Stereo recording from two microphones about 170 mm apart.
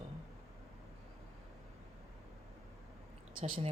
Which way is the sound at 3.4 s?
30° right (ahead or behind).